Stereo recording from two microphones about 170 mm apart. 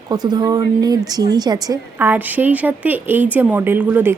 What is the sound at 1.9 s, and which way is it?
Speech, 10° right (ahead or behind).